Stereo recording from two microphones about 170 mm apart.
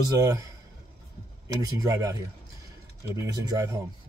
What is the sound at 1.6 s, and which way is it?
Speech, 20° right (ahead or behind).